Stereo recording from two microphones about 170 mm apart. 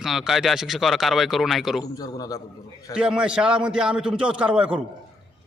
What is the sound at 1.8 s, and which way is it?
Speech, 20° left (ahead or behind).